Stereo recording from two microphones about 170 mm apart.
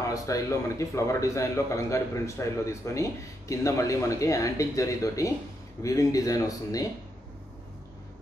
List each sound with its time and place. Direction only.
0.1 s a man's voice: 20° left (ahead or behind)